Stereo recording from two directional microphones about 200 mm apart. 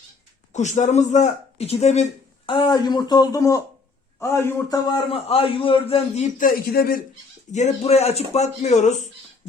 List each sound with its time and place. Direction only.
0.5 s speech: 35° left (ahead or behind)
2.6 s a man's voice: 20° left (ahead or behind)
6.4 s a man's voice: 50° left (ahead or behind)
7.5 s speech: 35° left (ahead or behind)